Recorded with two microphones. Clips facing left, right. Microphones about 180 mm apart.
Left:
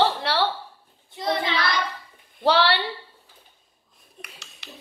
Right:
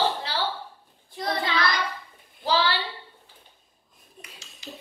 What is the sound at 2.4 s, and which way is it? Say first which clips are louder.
Speech: left 4 dB; 70° left (ahead or behind).